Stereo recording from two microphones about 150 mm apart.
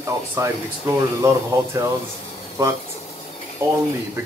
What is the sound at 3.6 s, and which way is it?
Speech, 15° right (ahead or behind).